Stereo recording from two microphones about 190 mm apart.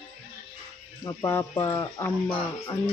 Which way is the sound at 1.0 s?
15° left (ahead or behind).